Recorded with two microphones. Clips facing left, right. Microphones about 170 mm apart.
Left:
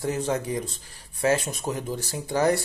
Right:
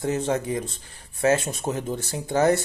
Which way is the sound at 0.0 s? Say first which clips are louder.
Right 2 dB; 25° right (ahead or behind).